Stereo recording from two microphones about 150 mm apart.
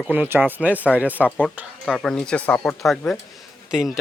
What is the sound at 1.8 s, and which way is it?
Speech, centre (ahead or behind).